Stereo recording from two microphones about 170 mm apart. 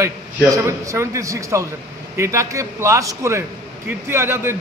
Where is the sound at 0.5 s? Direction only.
20° right (ahead or behind).